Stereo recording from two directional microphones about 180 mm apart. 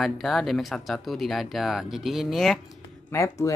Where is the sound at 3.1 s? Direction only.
15° left (ahead or behind).